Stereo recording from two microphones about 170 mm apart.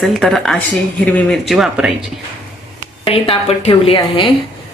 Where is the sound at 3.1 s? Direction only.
35° left (ahead or behind).